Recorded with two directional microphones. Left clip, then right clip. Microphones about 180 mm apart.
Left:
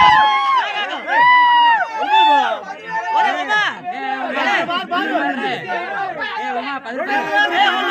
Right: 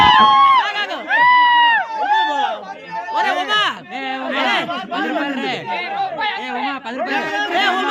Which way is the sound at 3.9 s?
65° right (ahead or behind).